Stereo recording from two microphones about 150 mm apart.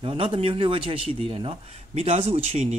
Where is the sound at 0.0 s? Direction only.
35° right (ahead or behind).